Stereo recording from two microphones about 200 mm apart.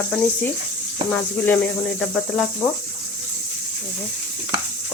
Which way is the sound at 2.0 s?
5° left (ahead or behind).